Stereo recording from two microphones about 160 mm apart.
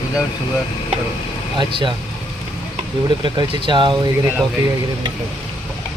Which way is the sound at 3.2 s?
30° right (ahead or behind).